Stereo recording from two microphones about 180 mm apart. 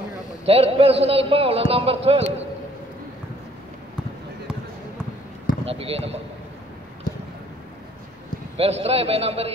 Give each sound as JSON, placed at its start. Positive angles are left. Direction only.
{"t": 0.5, "sound": "speech", "side_deg": -35}
{"t": 5.7, "sound": "speech", "side_deg": -35}
{"t": 8.5, "sound": "speech", "side_deg": -35}